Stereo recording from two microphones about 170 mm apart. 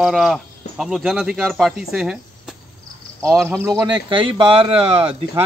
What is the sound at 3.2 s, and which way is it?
Speech, 15° right (ahead or behind).